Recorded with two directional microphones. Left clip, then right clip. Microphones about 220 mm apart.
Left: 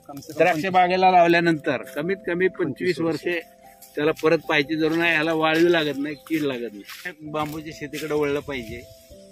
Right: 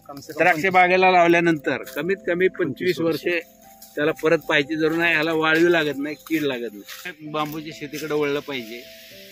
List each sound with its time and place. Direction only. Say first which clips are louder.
0.4 s a man's voice: right 2 dB; 20° left (ahead or behind)
3.9 s a man's voice: even; 20° left (ahead or behind); by 8.6 s 5° left (ahead or behind)